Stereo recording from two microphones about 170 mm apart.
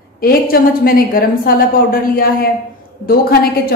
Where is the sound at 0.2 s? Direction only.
60° left (ahead or behind).